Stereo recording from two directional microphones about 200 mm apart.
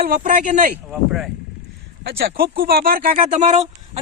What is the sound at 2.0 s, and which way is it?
Speech, 55° right (ahead or behind).